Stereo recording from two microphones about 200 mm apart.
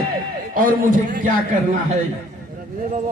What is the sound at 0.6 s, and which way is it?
Speech, 40° right (ahead or behind).